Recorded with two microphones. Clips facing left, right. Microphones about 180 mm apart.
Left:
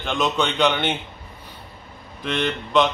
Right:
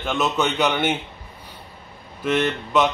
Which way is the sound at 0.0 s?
5° right (ahead or behind).